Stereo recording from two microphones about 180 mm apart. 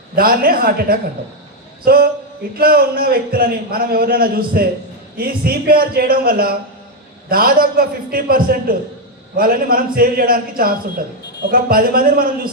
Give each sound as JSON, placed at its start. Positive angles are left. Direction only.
{"t": 0.2, "sound": "a man's voice", "side_deg": -55}